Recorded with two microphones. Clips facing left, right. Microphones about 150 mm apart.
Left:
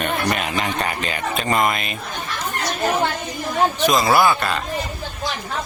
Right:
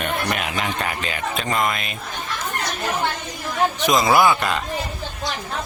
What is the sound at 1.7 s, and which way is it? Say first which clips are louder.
Speech: left 2 dB; centre (ahead or behind).